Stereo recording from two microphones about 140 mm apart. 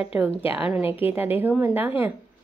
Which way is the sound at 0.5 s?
10° right (ahead or behind).